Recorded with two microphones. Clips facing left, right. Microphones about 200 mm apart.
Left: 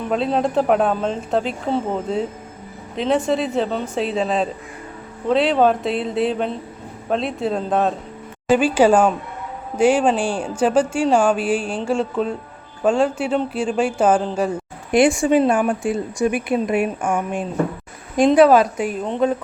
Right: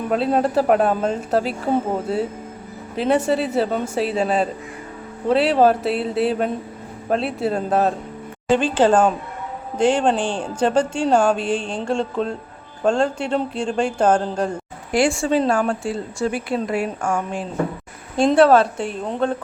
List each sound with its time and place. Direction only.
0.1 s speech: 5° right (ahead or behind)
2.9 s speech: 5° right (ahead or behind)
8.4 s speech: 10° left (ahead or behind)
14.9 s speech: 20° left (ahead or behind)
18.3 s speech: 5° left (ahead or behind)
18.6 s a woman's voice: 30° right (ahead or behind)
19.0 s speech: centre (ahead or behind)